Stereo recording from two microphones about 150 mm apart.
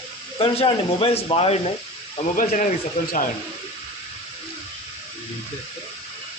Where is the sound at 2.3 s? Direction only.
60° left (ahead or behind).